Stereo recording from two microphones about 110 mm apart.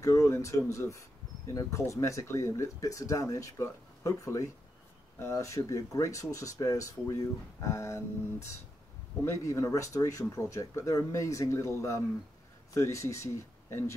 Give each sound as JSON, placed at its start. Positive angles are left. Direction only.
{"t": 0.0, "sound": "speech", "side_deg": 30}